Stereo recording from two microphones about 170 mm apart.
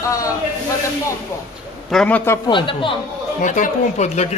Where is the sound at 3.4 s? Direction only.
45° left (ahead or behind).